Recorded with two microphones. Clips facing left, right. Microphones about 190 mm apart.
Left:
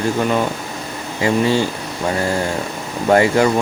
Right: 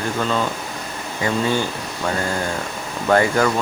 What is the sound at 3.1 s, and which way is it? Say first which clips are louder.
Speech: left 3 dB; 25° left (ahead or behind).